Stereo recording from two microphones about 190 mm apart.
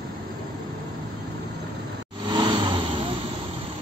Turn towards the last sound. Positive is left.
turn(degrees=-25)  # may be behind; listen again after turning